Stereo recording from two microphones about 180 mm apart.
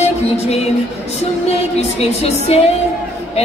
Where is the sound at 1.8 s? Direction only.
35° left (ahead or behind).